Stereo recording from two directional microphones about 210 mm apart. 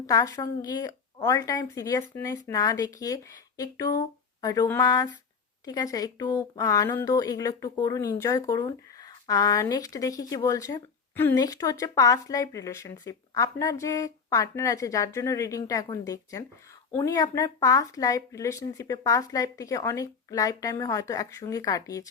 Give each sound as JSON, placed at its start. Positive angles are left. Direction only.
{"t": 0.1, "sound": "speech", "side_deg": 15}